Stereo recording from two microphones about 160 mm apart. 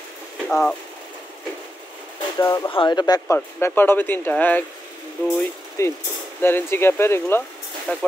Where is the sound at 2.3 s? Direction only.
25° left (ahead or behind).